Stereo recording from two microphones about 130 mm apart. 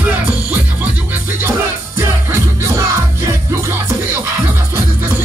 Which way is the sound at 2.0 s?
20° right (ahead or behind).